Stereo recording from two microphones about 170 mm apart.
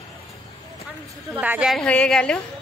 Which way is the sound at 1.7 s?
5° left (ahead or behind).